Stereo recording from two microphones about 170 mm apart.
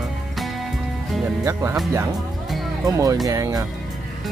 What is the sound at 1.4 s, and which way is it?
Speech, 15° right (ahead or behind).